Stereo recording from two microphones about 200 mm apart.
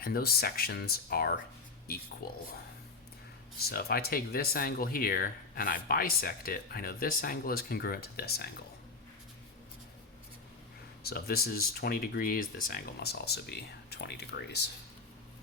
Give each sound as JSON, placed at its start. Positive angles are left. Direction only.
{"t": 0.0, "sound": "speech", "side_deg": 50}
{"t": 3.6, "sound": "speech", "side_deg": 50}
{"t": 11.0, "sound": "speech", "side_deg": 50}